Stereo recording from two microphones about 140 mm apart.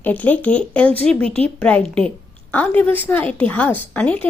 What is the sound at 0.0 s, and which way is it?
A woman's voice, 10° left (ahead or behind).